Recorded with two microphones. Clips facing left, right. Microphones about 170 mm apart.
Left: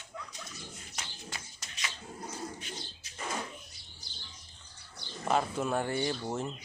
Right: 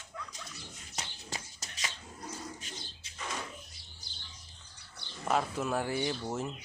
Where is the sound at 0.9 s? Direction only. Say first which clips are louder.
Right 3 dB; 40° right (ahead or behind).